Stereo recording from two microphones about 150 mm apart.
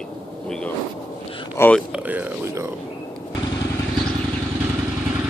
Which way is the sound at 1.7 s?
10° right (ahead or behind).